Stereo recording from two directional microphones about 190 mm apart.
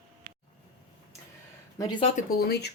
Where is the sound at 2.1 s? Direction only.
55° left (ahead or behind).